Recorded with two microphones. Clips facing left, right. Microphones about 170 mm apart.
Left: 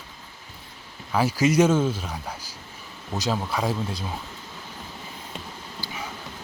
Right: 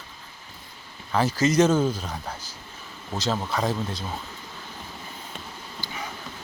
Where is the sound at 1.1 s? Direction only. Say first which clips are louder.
Left 1 dB; 10° left (ahead or behind).